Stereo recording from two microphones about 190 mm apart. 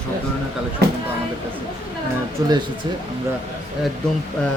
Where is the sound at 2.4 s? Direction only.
20° right (ahead or behind).